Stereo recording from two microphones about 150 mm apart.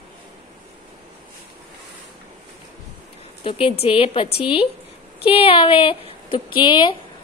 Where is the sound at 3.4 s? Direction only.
40° left (ahead or behind).